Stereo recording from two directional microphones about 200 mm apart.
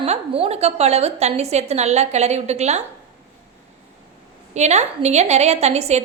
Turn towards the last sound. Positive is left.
turn(degrees=-35)  # may be behind; listen again after turning